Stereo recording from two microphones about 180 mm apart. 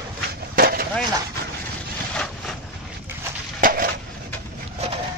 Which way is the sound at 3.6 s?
55° right (ahead or behind).